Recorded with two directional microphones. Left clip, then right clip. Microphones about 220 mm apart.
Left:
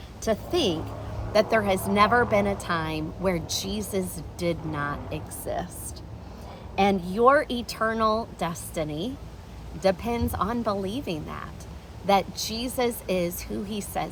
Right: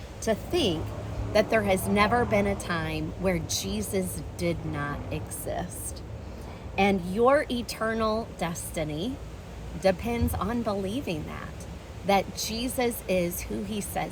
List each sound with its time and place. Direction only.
0.3 s a woman's voice: 15° left (ahead or behind)
6.7 s a woman's voice: 15° left (ahead or behind)